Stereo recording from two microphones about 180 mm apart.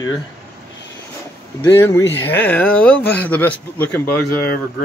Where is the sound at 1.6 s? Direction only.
15° left (ahead or behind).